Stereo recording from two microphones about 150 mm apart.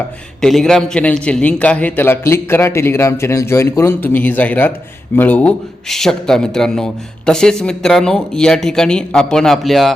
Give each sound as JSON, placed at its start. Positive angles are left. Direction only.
{"t": 0.4, "sound": "a man's voice", "side_deg": 5}